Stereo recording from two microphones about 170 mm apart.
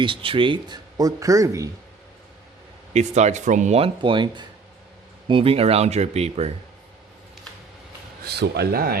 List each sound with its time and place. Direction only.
0.0 s speech: 30° right (ahead or behind)
2.9 s speech: 40° right (ahead or behind)
8.2 s speech: 75° right (ahead or behind)